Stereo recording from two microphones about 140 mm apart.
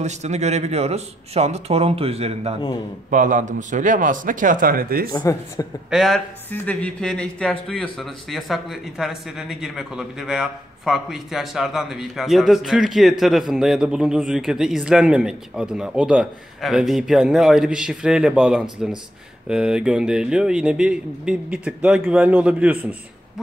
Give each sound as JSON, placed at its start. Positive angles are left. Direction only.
{"t": 0.0, "sound": "speech", "side_deg": -55}
{"t": 3.1, "sound": "a man's voice", "side_deg": -65}
{"t": 5.1, "sound": "speech", "side_deg": 25}
{"t": 5.9, "sound": "a man's voice", "side_deg": 0}
{"t": 6.5, "sound": "a man's voice", "side_deg": 10}